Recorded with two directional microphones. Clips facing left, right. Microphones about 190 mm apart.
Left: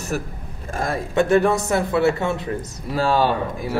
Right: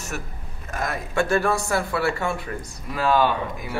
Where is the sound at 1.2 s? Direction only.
20° left (ahead or behind).